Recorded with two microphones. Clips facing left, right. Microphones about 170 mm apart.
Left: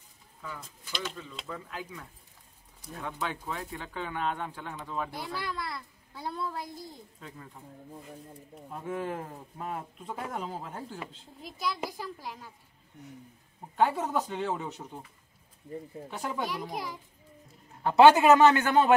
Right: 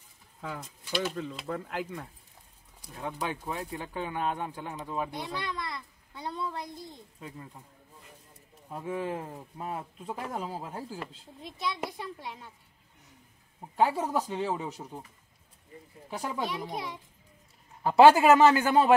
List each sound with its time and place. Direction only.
1.1 s speech: 60° right (ahead or behind)
3.0 s speech: 15° right (ahead or behind)
5.3 s a child's voice: 5° left (ahead or behind)
7.2 s speech: 10° right (ahead or behind)
8.8 s a child's voice: 5° right (ahead or behind)
13.7 s a child's voice: 10° right (ahead or behind)
16.1 s a child's voice: centre (ahead or behind)